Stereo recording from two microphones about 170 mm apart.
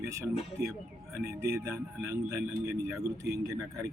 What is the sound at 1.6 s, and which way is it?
Speech, 15° right (ahead or behind).